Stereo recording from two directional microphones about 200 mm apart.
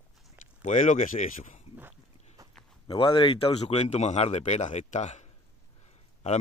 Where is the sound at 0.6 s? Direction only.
35° left (ahead or behind).